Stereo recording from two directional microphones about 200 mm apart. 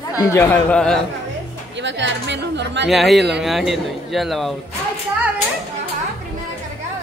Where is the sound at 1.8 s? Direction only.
65° right (ahead or behind).